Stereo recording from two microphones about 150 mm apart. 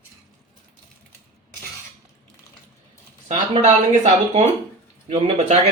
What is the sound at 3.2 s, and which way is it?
Speech, 50° right (ahead or behind).